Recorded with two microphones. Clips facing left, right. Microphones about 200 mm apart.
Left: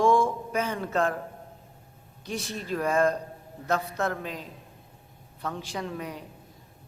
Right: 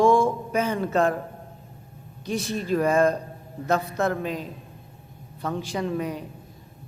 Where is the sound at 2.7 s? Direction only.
15° right (ahead or behind).